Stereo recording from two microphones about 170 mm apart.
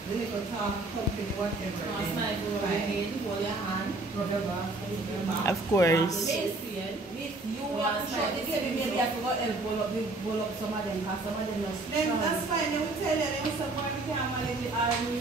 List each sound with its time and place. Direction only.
5.4 s speech: 15° left (ahead or behind)